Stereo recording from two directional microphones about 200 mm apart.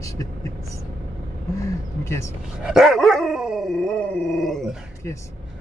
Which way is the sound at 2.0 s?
15° left (ahead or behind).